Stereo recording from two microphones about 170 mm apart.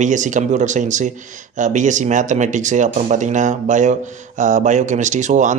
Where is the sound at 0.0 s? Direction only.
45° right (ahead or behind).